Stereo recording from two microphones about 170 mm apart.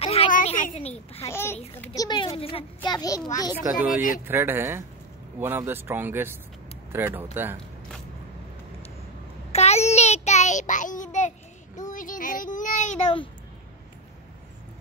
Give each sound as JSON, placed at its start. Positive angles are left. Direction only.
{"t": 0.0, "sound": "a sound", "side_deg": 35}
{"t": 0.3, "sound": "a sound", "side_deg": 50}
{"t": 0.7, "sound": "a child's voice", "side_deg": 35}
{"t": 1.2, "sound": "a child's voice", "side_deg": 15}
{"t": 2.0, "sound": "a child's voice", "side_deg": 25}
{"t": 3.7, "sound": "child singing", "side_deg": 50}
{"t": 4.3, "sound": "speech", "side_deg": -15}
{"t": 9.5, "sound": "child singing", "side_deg": 40}